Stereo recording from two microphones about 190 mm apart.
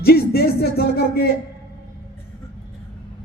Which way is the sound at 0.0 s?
55° left (ahead or behind).